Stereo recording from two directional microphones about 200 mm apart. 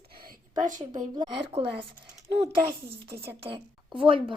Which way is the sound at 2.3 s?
55° right (ahead or behind).